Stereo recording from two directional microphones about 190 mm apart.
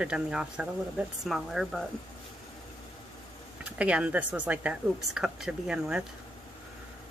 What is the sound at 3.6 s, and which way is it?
Speech, 5° right (ahead or behind).